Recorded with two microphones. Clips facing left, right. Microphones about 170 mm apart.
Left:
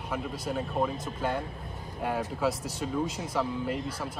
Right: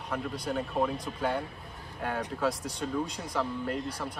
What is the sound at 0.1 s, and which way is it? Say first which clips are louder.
Speech: even; 5° left (ahead or behind).